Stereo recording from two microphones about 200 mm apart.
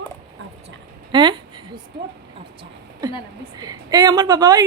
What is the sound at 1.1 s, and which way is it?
Speech, 25° right (ahead or behind).